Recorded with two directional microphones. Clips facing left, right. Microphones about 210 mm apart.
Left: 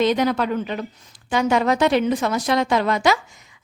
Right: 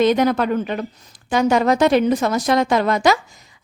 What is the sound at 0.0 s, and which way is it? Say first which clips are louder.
A woman's voice: right 3 dB; 50° right (ahead or behind).